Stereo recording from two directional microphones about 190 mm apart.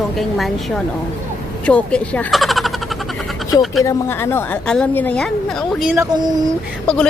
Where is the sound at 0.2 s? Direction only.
Centre (ahead or behind).